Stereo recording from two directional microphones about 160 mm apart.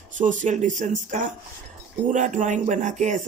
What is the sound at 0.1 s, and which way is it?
Speech, 50° right (ahead or behind).